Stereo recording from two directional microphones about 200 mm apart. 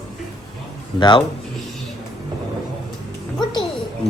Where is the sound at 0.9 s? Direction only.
25° left (ahead or behind).